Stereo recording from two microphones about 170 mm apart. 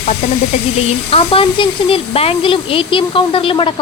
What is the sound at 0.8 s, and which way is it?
Speech, 35° left (ahead or behind).